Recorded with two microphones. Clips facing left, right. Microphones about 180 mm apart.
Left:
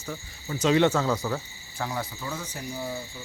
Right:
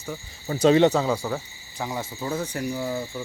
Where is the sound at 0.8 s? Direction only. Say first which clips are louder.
Right 3 dB; 15° right (ahead or behind).